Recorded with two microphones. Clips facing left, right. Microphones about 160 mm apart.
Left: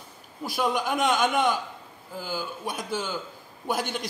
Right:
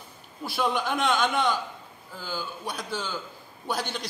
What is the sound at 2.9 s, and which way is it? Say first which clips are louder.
Speech: left 3 dB; 10° left (ahead or behind).